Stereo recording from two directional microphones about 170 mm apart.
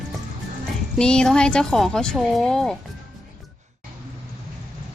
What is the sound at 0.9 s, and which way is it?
Speech, 5° left (ahead or behind).